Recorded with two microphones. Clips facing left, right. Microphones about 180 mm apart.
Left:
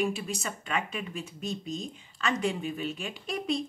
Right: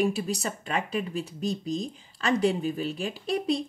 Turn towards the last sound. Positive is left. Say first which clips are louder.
# right 4 dB
turn(degrees=-35)  # may be behind; listen again after turning